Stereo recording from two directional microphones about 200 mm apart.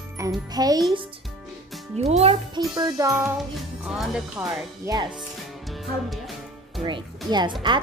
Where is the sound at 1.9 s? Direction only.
30° right (ahead or behind).